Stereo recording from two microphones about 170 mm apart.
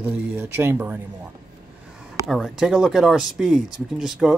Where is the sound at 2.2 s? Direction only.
Centre (ahead or behind).